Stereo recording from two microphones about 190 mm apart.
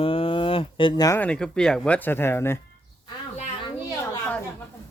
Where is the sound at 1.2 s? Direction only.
5° left (ahead or behind).